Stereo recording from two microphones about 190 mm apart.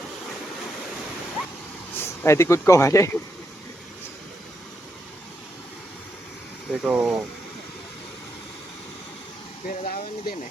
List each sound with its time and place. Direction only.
2.0 s speech: 15° left (ahead or behind)
6.7 s speech: 5° right (ahead or behind)
9.6 s speech: 50° left (ahead or behind)